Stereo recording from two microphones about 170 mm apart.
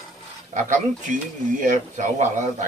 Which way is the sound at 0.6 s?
45° right (ahead or behind).